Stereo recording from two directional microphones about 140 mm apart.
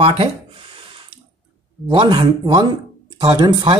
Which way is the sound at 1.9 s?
35° right (ahead or behind).